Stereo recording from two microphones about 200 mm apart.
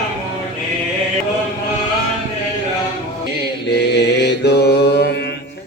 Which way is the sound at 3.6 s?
55° left (ahead or behind).